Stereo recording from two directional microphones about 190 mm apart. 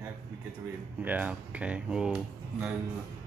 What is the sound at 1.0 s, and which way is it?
Speech, 10° right (ahead or behind).